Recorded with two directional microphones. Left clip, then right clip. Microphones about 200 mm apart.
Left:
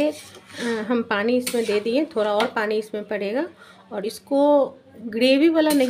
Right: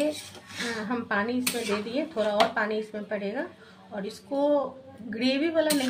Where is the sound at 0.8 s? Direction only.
50° left (ahead or behind).